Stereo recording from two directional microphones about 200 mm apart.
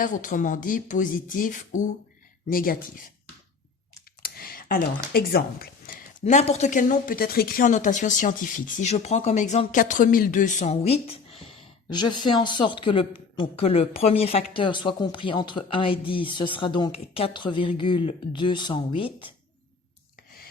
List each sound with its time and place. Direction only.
0.0 s speech: 40° left (ahead or behind)
4.2 s computer keyboard: 45° left (ahead or behind)
5.1 s speech: 50° left (ahead or behind)
6.2 s speech: 35° left (ahead or behind)